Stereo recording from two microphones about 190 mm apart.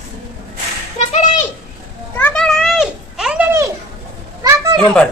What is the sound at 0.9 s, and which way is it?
Music, 35° left (ahead or behind).